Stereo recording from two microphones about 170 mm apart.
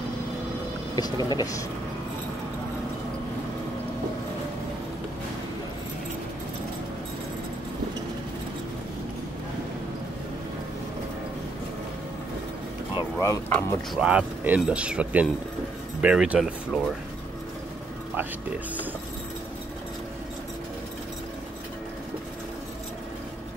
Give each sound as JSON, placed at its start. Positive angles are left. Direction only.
{"t": 0.9, "sound": "speech", "side_deg": 25}
{"t": 12.9, "sound": "a sound", "side_deg": 20}
{"t": 14.0, "sound": "speech", "side_deg": -10}